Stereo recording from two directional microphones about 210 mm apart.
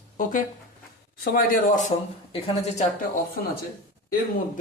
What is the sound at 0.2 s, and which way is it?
Speech, 40° left (ahead or behind).